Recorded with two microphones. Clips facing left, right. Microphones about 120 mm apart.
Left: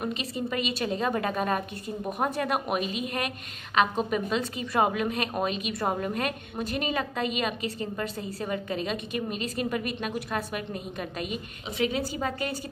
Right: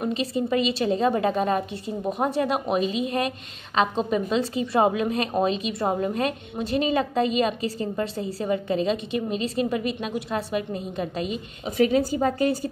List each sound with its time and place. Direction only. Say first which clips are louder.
0.1 s a woman's voice: right 7 dB; 35° right (ahead or behind)
11.6 s a woman's voice: right 8 dB; 45° right (ahead or behind)